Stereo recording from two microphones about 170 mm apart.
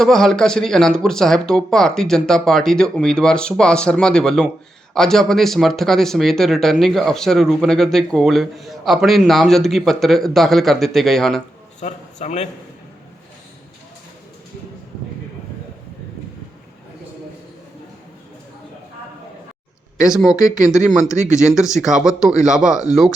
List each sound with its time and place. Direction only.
0.0 s speech: centre (ahead or behind)
11.8 s a man's voice: 45° left (ahead or behind)
20.1 s speech: 5° right (ahead or behind)